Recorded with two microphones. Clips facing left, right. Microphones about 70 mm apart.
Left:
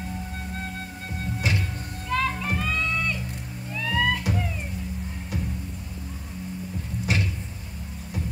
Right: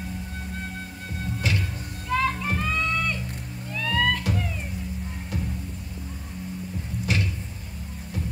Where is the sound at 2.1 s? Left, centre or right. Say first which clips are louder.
Right 1 dB; centre.